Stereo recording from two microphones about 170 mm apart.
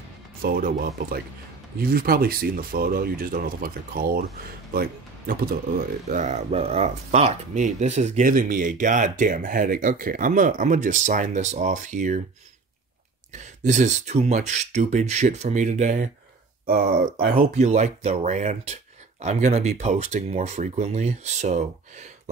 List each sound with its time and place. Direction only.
0.4 s speech: 60° right (ahead or behind)
6.0 s speech: 45° right (ahead or behind)
13.3 s speech: 45° right (ahead or behind)
16.6 s speech: 60° right (ahead or behind)
17.6 s speech: 40° right (ahead or behind)